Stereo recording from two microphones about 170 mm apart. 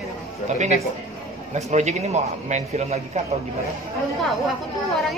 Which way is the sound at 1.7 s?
40° right (ahead or behind).